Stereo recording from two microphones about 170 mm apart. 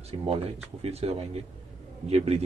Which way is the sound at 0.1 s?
30° right (ahead or behind).